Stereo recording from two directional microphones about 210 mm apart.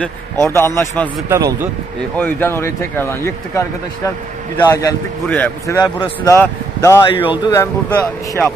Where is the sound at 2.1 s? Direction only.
10° left (ahead or behind).